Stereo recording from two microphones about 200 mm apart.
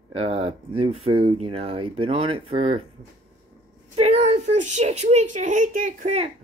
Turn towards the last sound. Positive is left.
turn(degrees=-35)  # may be behind; listen again after turning